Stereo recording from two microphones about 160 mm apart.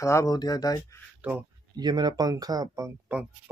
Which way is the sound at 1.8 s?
25° right (ahead or behind).